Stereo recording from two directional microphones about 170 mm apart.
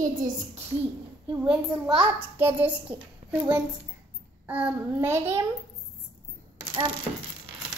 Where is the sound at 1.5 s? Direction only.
5° right (ahead or behind).